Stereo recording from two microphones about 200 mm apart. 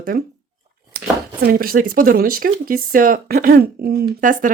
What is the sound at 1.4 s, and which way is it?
Speech, 50° right (ahead or behind).